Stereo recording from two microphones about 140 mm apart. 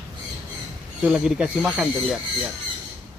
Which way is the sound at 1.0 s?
5° right (ahead or behind).